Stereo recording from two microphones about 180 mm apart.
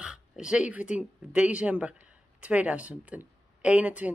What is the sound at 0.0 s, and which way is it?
A woman's voice, 5° right (ahead or behind).